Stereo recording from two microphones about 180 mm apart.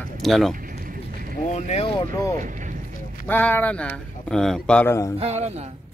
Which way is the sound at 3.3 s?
10° left (ahead or behind).